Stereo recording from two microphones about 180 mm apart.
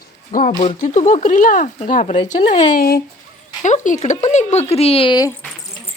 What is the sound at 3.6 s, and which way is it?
Speech, 45° left (ahead or behind).